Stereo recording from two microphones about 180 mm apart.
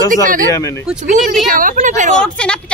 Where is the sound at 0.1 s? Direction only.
50° right (ahead or behind).